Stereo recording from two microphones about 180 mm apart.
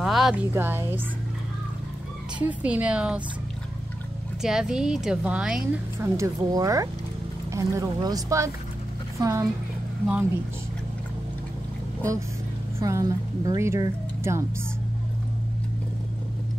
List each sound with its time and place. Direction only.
0.0 s a sound: centre (ahead or behind)
0.5 s speech: 10° right (ahead or behind)
2.3 s speech: 5° right (ahead or behind)
4.4 s speech: 5° right (ahead or behind)
6.1 s speech: 20° right (ahead or behind)
12.7 s speech: 20° right (ahead or behind)